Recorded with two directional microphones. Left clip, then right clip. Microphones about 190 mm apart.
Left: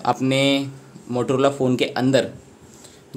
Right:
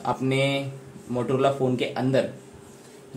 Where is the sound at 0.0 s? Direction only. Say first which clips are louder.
Left 5 dB; 50° left (ahead or behind).